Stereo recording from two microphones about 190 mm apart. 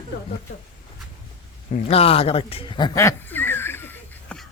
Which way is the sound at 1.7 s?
30° left (ahead or behind).